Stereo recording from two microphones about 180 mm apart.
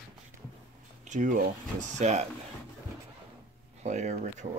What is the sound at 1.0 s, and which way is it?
Speech, 45° right (ahead or behind).